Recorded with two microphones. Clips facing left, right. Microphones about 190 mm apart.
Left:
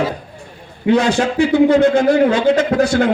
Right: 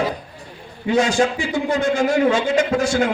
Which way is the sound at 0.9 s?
65° left (ahead or behind).